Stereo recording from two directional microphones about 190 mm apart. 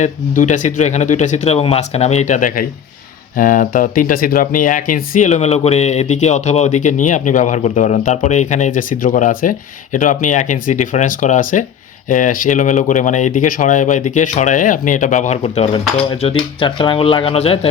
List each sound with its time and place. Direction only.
0.0 s speech: 40° left (ahead or behind)